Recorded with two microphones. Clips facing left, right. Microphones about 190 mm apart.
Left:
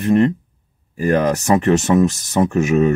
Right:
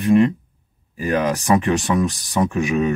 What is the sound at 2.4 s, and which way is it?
Speech, 45° left (ahead or behind).